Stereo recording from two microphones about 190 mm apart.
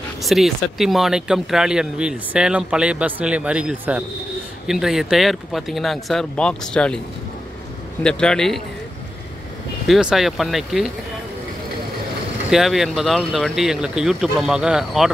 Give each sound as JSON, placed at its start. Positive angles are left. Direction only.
{"t": 0.2, "sound": "speech", "side_deg": 0}
{"t": 8.0, "sound": "speech", "side_deg": 5}
{"t": 9.8, "sound": "speech", "side_deg": -5}
{"t": 12.4, "sound": "speech", "side_deg": 0}